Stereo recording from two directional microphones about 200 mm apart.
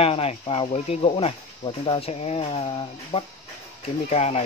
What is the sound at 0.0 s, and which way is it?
Speech, 30° left (ahead or behind).